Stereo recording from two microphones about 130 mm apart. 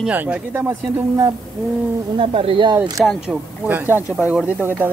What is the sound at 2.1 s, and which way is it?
Speech, 45° right (ahead or behind).